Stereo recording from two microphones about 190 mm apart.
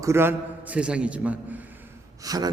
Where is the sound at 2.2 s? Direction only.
20° right (ahead or behind).